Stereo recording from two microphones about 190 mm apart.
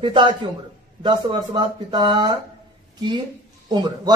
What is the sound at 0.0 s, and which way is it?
A man's voice, 25° right (ahead or behind).